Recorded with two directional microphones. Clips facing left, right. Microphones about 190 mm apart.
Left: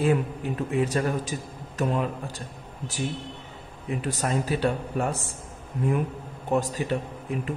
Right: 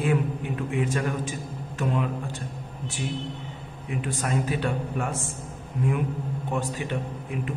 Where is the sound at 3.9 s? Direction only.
40° left (ahead or behind).